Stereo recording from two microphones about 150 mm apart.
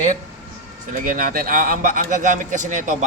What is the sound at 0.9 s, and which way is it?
A man's voice, 65° right (ahead or behind).